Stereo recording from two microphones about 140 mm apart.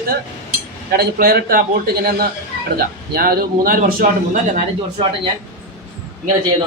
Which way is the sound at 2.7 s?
90° right.